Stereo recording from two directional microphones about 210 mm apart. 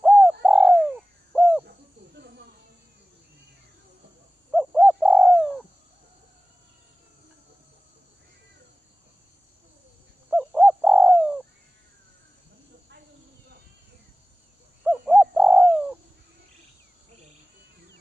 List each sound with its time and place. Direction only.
0.0 s bird: centre (ahead or behind)
1.7 s snake: 50° right (ahead or behind)
4.5 s bird: centre (ahead or behind)
10.3 s bird: centre (ahead or behind)
14.9 s bird: centre (ahead or behind)